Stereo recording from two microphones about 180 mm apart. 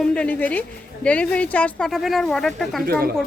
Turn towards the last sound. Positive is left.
turn(degrees=-55)  # may be behind; listen again after turning